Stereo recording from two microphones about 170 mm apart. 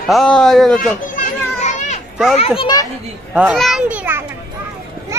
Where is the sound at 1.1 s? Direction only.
45° left (ahead or behind).